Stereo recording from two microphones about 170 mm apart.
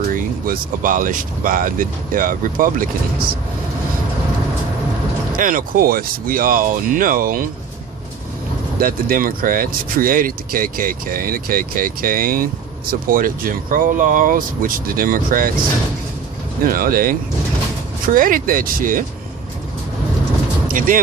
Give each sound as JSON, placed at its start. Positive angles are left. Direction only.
{"t": 0.1, "sound": "speech", "side_deg": -55}
{"t": 5.4, "sound": "speech", "side_deg": -55}
{"t": 8.8, "sound": "speech", "side_deg": -55}
{"t": 16.6, "sound": "speech", "side_deg": -55}
{"t": 20.7, "sound": "speech", "side_deg": -55}